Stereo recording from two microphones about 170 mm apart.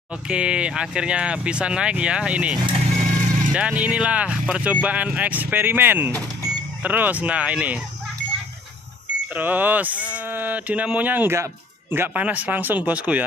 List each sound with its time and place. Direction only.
0.3 s speech: 5° right (ahead or behind)
2.6 s vehicle: 35° right (ahead or behind)
3.1 s vehicle: 50° right (ahead or behind)
3.5 s speech: 10° right (ahead or behind)
9.3 s speech: 10° right (ahead or behind)